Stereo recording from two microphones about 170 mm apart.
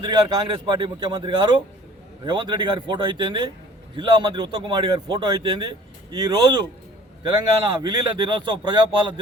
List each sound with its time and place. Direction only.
0.0 s a man's voice: 25° right (ahead or behind)
7.8 s a man's voice: 25° right (ahead or behind)